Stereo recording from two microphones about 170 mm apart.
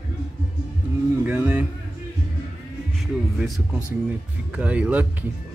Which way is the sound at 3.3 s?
Centre (ahead or behind).